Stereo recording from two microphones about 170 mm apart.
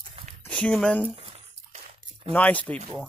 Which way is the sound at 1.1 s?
35° right (ahead or behind).